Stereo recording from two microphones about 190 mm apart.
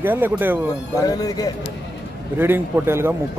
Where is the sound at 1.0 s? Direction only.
20° left (ahead or behind).